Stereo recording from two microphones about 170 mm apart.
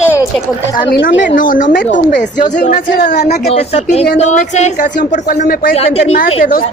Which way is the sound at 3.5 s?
40° left (ahead or behind).